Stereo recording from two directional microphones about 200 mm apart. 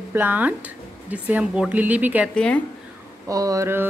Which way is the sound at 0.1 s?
10° right (ahead or behind).